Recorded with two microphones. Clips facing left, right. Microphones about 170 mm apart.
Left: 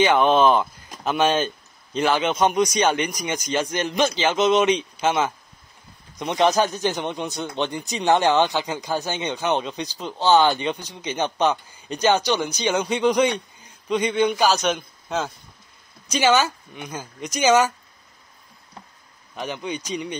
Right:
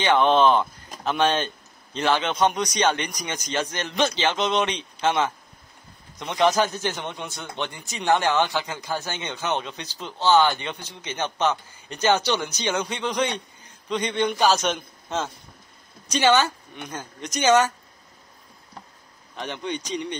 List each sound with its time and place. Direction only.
0.0 s speech: 10° left (ahead or behind)
19.3 s speech: 5° left (ahead or behind)